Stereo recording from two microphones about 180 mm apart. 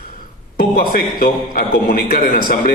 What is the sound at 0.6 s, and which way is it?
A man's voice, 55° left (ahead or behind).